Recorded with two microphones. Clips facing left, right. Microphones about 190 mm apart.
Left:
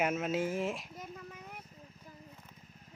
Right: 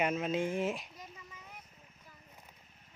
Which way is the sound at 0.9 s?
55° left (ahead or behind).